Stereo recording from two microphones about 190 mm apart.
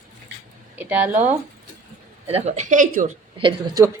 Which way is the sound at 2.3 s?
35° right (ahead or behind).